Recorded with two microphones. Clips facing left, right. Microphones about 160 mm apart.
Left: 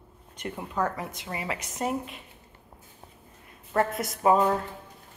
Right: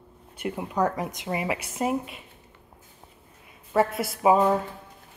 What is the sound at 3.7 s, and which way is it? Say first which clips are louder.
Speech: right 3 dB; 5° right (ahead or behind).